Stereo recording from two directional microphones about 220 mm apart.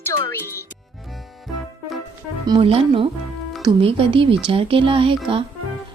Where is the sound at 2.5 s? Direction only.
25° right (ahead or behind).